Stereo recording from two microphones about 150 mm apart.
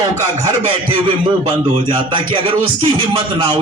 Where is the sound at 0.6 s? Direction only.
35° right (ahead or behind).